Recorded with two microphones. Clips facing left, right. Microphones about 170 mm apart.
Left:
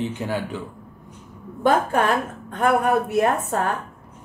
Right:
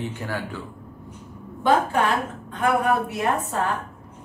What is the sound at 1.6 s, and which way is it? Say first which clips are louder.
Speech: left 1 dB; 50° left (ahead or behind).